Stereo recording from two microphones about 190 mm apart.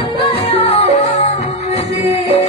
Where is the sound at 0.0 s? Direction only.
30° left (ahead or behind).